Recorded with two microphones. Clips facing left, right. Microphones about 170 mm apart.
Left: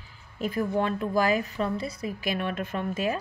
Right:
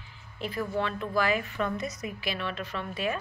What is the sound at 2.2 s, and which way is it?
Speech, 50° left (ahead or behind).